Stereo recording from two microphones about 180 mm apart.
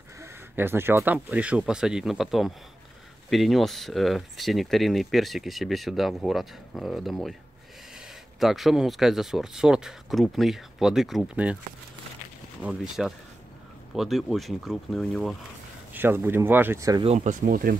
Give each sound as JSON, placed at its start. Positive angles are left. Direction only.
{"t": 0.2, "sound": "speech", "side_deg": -10}
{"t": 8.4, "sound": "speech", "side_deg": 0}
{"t": 12.6, "sound": "speech", "side_deg": -5}
{"t": 15.9, "sound": "speech", "side_deg": -10}
{"t": 17.0, "sound": "speech", "side_deg": -40}